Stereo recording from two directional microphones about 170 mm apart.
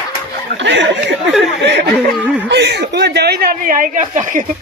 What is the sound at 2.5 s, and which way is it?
A man's voice, 85° right.